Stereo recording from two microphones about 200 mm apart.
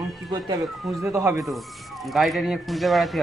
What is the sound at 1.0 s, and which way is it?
Speech, 10° right (ahead or behind).